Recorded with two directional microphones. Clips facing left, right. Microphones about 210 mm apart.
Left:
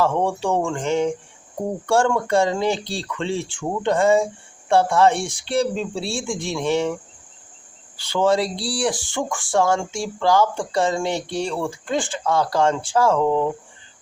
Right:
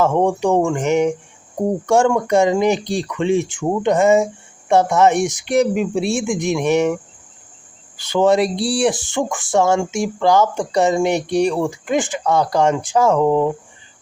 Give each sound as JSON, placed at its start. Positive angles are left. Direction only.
{"t": 0.0, "sound": "speech", "side_deg": -20}
{"t": 8.1, "sound": "speech", "side_deg": -20}